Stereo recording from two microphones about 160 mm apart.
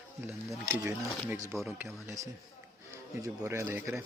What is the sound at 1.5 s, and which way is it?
Speech, 5° right (ahead or behind).